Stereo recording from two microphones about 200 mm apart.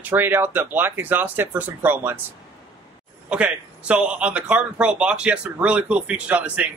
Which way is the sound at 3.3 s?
5° right (ahead or behind).